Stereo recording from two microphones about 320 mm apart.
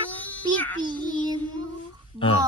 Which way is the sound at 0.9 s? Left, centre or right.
Centre.